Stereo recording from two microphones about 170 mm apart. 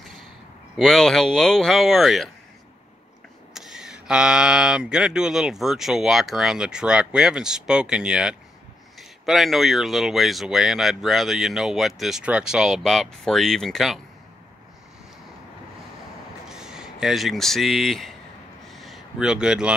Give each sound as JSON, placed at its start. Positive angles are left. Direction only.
{"t": 0.7, "sound": "speech", "side_deg": 0}
{"t": 3.5, "sound": "speech", "side_deg": -5}
{"t": 16.4, "sound": "speech", "side_deg": -5}
{"t": 18.7, "sound": "a sound", "side_deg": 0}